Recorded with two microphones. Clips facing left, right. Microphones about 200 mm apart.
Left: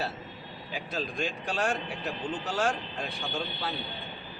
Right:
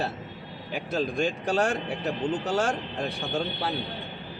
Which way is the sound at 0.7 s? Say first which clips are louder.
Right 6 dB; 50° right (ahead or behind).